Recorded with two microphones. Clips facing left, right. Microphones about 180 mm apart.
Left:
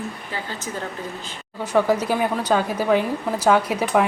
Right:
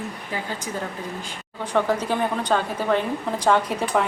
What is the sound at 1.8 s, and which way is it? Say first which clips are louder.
A woman's voice: left 3 dB; 10° left (ahead or behind).